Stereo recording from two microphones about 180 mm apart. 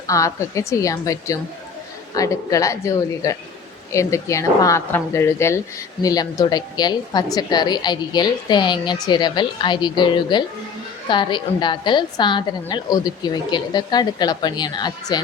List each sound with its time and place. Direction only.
0.1 s a woman's voice: 20° left (ahead or behind)